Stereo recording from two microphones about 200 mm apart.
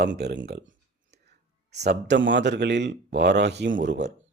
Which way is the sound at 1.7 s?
55° right (ahead or behind).